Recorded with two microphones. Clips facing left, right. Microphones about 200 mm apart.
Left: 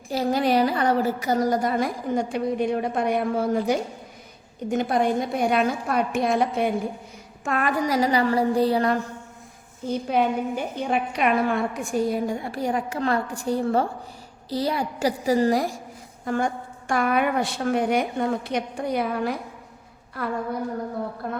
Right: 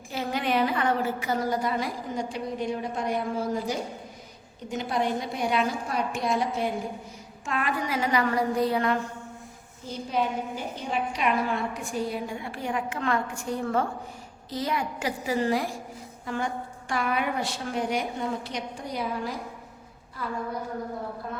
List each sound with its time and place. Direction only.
0.1 s a woman's voice: 40° left (ahead or behind)
9.8 s a woman's voice: 60° left (ahead or behind)